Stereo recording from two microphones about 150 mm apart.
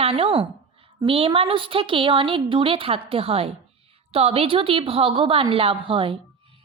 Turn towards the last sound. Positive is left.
turn(degrees=-35)  # may be behind; listen again after turning